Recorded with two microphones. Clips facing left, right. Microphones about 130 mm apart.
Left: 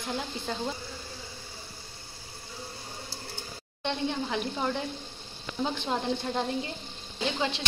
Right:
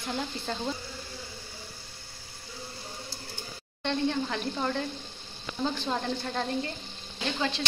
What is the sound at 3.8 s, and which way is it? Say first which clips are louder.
Speech: right 2 dB; 15° left (ahead or behind).